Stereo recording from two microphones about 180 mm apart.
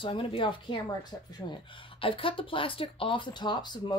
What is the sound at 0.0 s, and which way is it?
A woman's voice, 30° left (ahead or behind).